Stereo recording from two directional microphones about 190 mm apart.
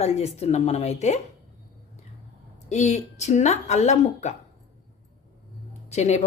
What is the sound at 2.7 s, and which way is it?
Speech, 35° left (ahead or behind).